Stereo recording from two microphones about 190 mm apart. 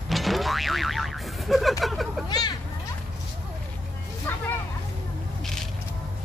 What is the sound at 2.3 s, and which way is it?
Speech, 20° left (ahead or behind).